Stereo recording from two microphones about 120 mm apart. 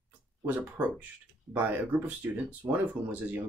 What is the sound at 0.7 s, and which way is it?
Speech, 15° right (ahead or behind).